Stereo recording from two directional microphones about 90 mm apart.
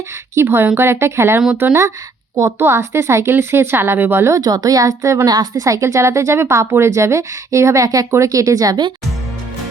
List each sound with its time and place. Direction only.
0.3 s speech: 25° right (ahead or behind)
4.3 s a woman's voice: 45° right (ahead or behind)